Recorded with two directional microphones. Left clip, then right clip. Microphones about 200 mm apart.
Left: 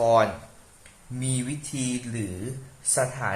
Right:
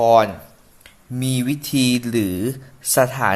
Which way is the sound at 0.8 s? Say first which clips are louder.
Right 9 dB; 40° right (ahead or behind).